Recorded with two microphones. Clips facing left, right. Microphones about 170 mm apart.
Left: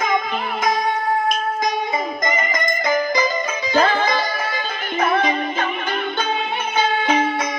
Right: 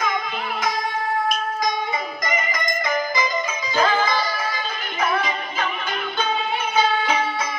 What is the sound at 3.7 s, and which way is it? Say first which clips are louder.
Music: left 2 dB; 50° left (ahead or behind).